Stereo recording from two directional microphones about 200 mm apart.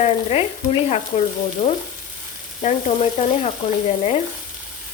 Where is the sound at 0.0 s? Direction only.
35° left (ahead or behind).